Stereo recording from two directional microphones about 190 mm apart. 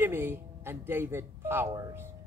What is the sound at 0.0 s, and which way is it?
A man's voice, 10° right (ahead or behind).